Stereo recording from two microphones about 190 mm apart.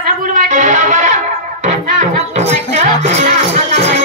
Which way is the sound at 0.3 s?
40° right (ahead or behind).